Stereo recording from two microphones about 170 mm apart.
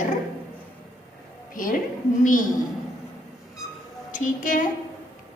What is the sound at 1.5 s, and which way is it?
Speech, 50° left (ahead or behind).